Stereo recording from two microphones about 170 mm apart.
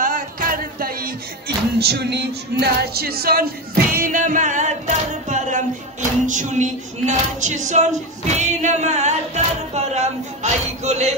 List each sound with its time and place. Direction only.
0.0 s music: 55° right (ahead or behind)
1.8 s music: 75° right (ahead or behind)
3.9 s singing: 50° right (ahead or behind)